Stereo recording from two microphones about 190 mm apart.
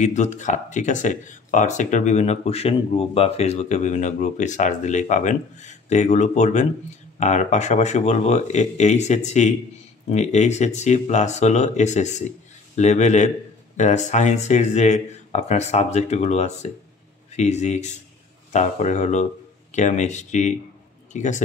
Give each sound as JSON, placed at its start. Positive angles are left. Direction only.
{"t": 0.0, "sound": "speech", "side_deg": 40}